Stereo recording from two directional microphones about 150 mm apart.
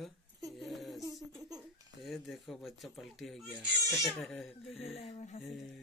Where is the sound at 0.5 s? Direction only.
Centre (ahead or behind).